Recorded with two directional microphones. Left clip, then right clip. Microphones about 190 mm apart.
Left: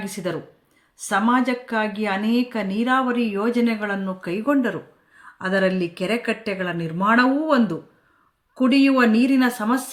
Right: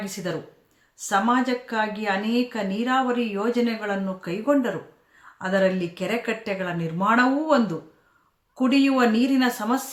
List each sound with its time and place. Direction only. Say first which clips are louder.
0.0 s a woman's voice: left 2 dB; 25° left (ahead or behind)